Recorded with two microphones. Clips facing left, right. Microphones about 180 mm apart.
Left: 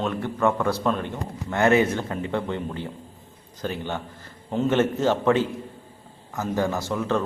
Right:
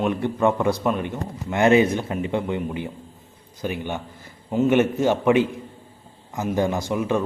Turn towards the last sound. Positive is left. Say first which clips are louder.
# right 2 dB
turn(degrees=-15)  # may be behind; listen again after turning